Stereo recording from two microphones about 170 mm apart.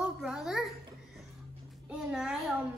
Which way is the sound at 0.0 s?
5° right (ahead or behind).